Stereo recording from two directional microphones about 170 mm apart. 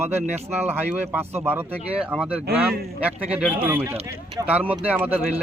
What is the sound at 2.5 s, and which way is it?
Speech, 65° right (ahead or behind).